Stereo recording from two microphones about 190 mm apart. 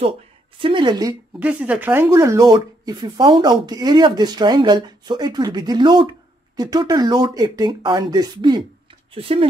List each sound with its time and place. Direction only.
0.6 s speech: 25° right (ahead or behind)
1.4 s speech: 5° right (ahead or behind); by 9.5 s 30° right (ahead or behind)